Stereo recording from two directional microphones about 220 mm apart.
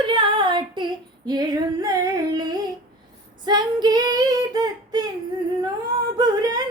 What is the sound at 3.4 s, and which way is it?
Female singing, 20° right (ahead or behind).